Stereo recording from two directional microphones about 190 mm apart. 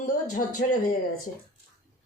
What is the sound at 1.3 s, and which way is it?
Speech, 45° left (ahead or behind).